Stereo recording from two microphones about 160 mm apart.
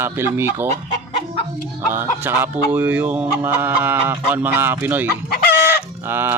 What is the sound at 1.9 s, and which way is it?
Fowl, 15° right (ahead or behind).